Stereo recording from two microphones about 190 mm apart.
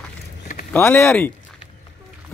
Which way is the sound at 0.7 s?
10° left (ahead or behind).